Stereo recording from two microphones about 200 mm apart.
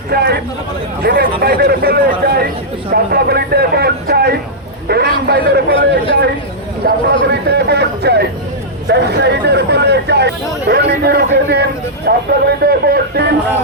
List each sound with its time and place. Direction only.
0.1 s speech: 55° right (ahead or behind)
2.9 s a sound: 50° right (ahead or behind)
6.8 s speech: 55° right (ahead or behind)